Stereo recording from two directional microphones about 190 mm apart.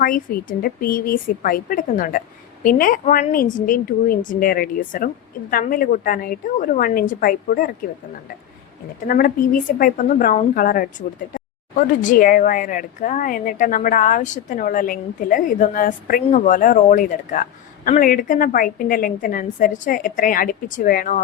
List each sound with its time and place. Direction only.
0.0 s speech: 50° left (ahead or behind)
9.0 s speech: 45° left (ahead or behind)